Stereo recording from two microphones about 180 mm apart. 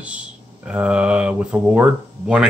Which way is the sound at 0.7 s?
5° right (ahead or behind).